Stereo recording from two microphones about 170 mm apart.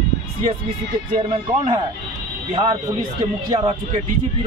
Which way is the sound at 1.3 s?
35° right (ahead or behind).